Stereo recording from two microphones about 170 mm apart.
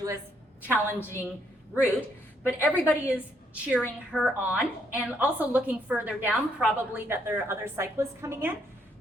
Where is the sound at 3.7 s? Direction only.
5° right (ahead or behind).